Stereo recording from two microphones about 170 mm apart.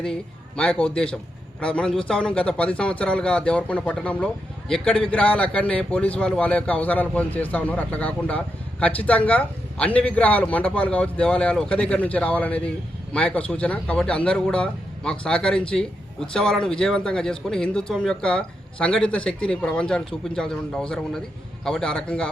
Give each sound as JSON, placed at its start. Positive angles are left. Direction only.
{"t": 0.0, "sound": "a man's voice", "side_deg": 5}